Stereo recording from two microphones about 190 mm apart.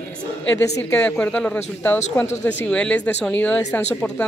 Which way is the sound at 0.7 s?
5° left (ahead or behind).